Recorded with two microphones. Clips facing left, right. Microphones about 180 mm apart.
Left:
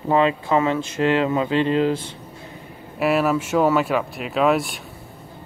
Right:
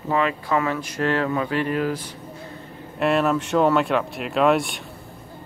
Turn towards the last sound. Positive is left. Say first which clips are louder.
# even
turn(degrees=0)  # may be behind; listen again after turning